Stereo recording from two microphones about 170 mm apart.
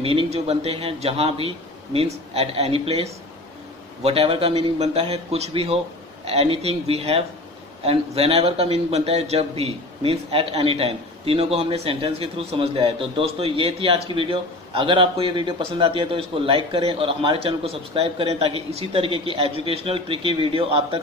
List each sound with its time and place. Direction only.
0.0 s speech: 35° right (ahead or behind)